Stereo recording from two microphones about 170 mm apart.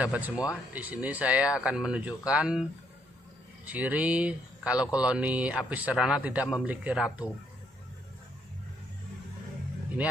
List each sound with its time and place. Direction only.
0.0 s speech: 10° right (ahead or behind)
3.6 s speech: 10° right (ahead or behind)